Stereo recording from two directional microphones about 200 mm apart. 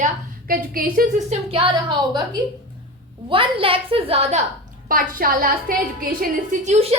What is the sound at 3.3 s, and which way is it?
A woman's voice, 25° right (ahead or behind).